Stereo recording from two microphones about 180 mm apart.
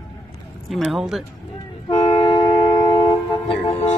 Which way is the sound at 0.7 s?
Centre (ahead or behind).